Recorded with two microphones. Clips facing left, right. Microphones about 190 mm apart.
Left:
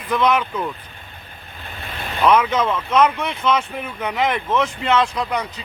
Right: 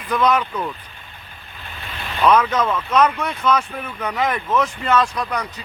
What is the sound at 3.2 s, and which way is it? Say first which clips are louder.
Speech: even; 25° left (ahead or behind).